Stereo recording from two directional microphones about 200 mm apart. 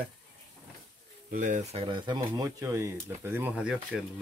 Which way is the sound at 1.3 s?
40° right (ahead or behind).